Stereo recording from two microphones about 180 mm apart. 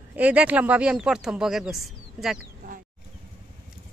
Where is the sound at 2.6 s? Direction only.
50° right (ahead or behind).